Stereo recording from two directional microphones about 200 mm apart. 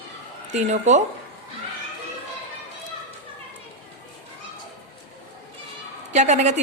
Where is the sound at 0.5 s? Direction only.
35° right (ahead or behind).